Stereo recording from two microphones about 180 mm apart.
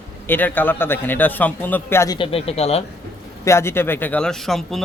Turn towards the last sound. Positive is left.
turn(degrees=0)  # may be behind; listen again after turning